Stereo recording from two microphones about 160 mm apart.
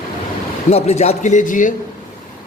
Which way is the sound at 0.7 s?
40° left (ahead or behind).